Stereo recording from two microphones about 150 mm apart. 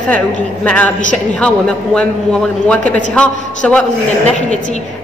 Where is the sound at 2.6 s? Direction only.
10° left (ahead or behind).